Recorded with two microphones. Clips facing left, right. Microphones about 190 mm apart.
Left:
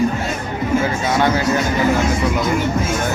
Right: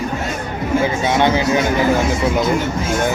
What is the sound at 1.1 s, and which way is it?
Speech, 20° right (ahead or behind).